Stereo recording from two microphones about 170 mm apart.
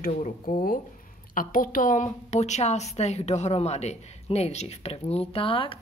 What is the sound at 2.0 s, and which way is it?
A woman's voice, 40° left (ahead or behind).